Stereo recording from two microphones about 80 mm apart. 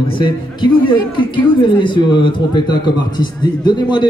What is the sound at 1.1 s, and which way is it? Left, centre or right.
Speech, left.